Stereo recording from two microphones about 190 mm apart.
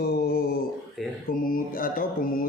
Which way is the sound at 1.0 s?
Centre (ahead or behind).